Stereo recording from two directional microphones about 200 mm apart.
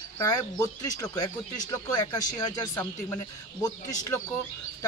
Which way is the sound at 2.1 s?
20° left (ahead or behind).